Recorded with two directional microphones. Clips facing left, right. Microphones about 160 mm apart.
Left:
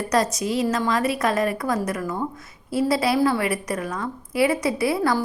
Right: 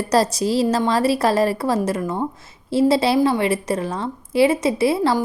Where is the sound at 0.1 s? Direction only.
30° right (ahead or behind).